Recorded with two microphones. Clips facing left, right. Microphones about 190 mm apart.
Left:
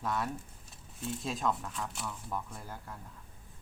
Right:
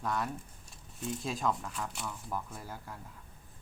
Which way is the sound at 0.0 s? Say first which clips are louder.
Even; centre (ahead or behind).